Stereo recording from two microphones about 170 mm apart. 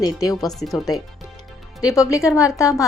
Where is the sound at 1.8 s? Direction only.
20° left (ahead or behind).